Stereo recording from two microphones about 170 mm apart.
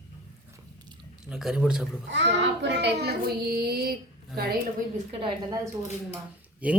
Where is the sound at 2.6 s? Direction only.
90° right; by 3.9 s 65° right (ahead or behind).